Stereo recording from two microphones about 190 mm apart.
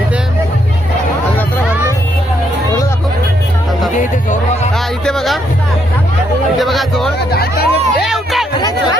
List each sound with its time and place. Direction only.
3.9 s chatter: 40° left (ahead or behind)
5.0 s music: centre (ahead or behind)
6.6 s a sound: centre (ahead or behind)
7.3 s music: 55° left (ahead or behind)
8.0 s music: centre (ahead or behind)